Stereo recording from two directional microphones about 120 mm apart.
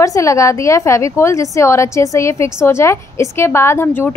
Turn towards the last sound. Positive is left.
turn(degrees=15)  # may be behind; listen again after turning